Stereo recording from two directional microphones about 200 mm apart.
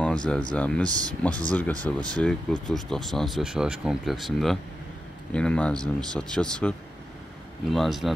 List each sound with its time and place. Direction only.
0.0 s speech: 5° left (ahead or behind)
0.8 s speech: 20° right (ahead or behind)
1.5 s speech: 5° left (ahead or behind)
1.8 s speech: 20° right (ahead or behind)
2.1 s speech: 5° left (ahead or behind)
7.7 s speech: centre (ahead or behind)